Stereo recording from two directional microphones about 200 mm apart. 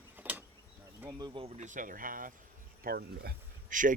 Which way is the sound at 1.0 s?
20° right (ahead or behind).